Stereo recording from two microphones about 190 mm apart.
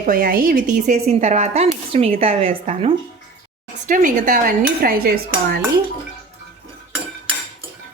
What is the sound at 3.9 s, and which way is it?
Cutlery, 45° right (ahead or behind).